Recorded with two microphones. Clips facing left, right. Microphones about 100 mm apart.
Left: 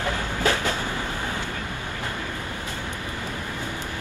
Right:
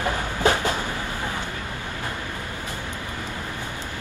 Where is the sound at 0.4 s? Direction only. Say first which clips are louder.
Right 3 dB; 20° right (ahead or behind).